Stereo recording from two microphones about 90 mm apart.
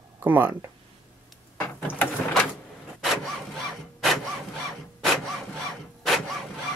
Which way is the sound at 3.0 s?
Centre (ahead or behind).